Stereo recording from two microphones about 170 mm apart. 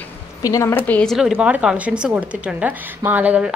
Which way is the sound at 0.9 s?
5° left (ahead or behind).